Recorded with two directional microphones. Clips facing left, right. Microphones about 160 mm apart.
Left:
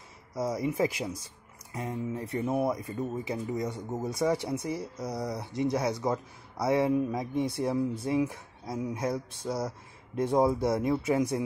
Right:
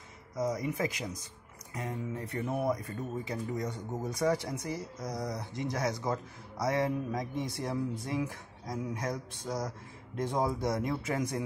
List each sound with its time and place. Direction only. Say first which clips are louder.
0.6 s speech: left 5 dB; 30° left (ahead or behind)
5.1 s speech: left 2 dB; 5° left (ahead or behind)
5.4 s speech: left 7 dB; 25° left (ahead or behind)